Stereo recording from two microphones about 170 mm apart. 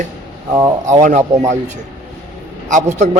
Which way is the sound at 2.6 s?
45° right (ahead or behind).